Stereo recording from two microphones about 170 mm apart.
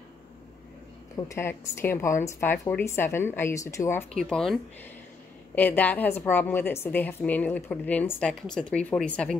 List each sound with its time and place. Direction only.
1.1 s a woman's voice: 15° left (ahead or behind)
4.2 s a woman's voice: centre (ahead or behind)